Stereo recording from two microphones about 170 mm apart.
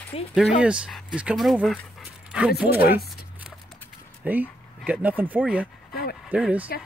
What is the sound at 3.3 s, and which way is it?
Music, 5° right (ahead or behind).